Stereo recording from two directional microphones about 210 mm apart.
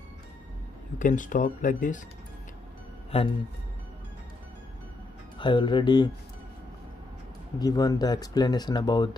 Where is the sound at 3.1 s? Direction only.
25° left (ahead or behind).